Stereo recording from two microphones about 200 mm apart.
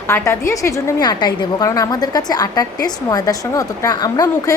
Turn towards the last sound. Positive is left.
turn(degrees=20)  # may be behind; listen again after turning